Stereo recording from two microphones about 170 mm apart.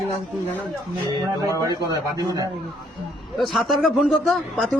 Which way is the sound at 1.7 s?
25° right (ahead or behind).